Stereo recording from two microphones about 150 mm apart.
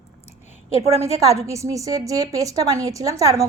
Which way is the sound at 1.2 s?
20° right (ahead or behind).